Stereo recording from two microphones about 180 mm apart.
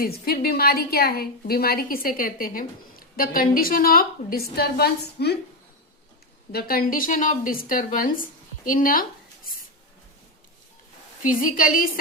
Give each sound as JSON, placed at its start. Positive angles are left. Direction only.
{"t": 0.0, "sound": "a woman's voice", "side_deg": 55}
{"t": 6.5, "sound": "speech", "side_deg": 60}
{"t": 11.2, "sound": "speech", "side_deg": 50}